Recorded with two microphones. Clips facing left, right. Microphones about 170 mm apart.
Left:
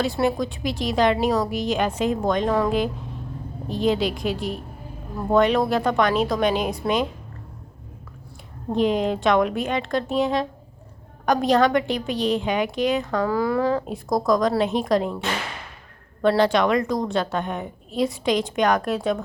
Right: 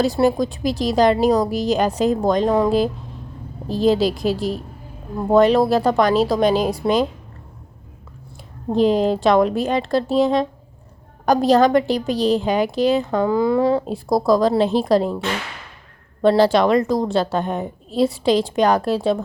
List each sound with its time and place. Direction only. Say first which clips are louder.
0.0 s a woman's voice: right 5 dB; 40° right (ahead or behind)
8.7 s a woman's voice: right 5 dB; 35° right (ahead or behind)
13.7 s a woman's voice: right 4 dB; 35° right (ahead or behind)
16.2 s a woman's voice: right 4 dB; 30° right (ahead or behind)